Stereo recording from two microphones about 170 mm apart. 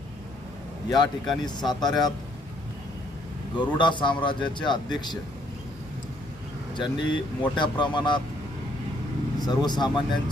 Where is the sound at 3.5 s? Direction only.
25° left (ahead or behind).